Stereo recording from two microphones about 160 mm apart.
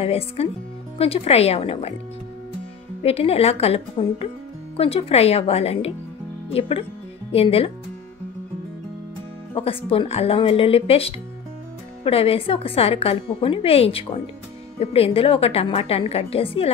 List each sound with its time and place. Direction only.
0.0 s speech: 35° left (ahead or behind)
3.0 s speech: 40° left (ahead or behind)
9.5 s speech: 35° left (ahead or behind)